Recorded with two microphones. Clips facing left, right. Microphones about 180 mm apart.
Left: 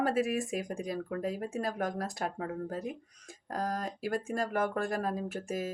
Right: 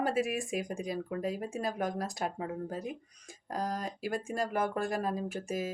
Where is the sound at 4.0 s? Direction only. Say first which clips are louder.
Left 1 dB; 15° right (ahead or behind).